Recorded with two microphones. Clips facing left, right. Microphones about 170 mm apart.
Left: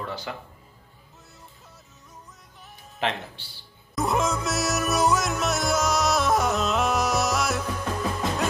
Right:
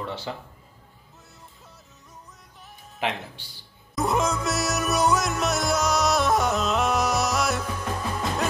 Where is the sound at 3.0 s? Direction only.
15° right (ahead or behind).